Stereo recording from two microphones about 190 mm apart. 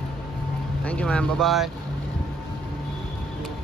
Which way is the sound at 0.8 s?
5° left (ahead or behind).